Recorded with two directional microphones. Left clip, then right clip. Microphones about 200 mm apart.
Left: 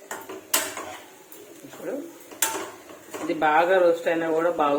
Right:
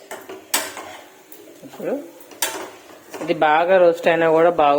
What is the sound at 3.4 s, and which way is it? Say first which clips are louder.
Speech: right 5 dB; 45° right (ahead or behind).